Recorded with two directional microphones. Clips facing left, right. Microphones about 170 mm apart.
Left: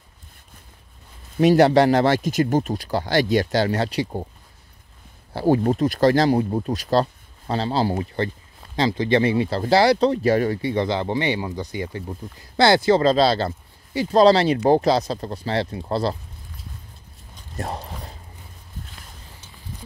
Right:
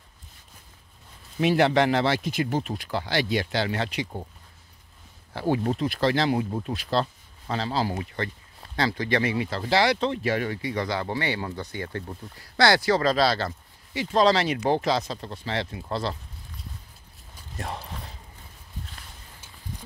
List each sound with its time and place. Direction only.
1.4 s speech: 40° left (ahead or behind)
5.3 s speech: 35° left (ahead or behind)
8.7 s speech: 20° left (ahead or behind)
12.5 s speech: 25° left (ahead or behind)
17.6 s speech: 40° left (ahead or behind)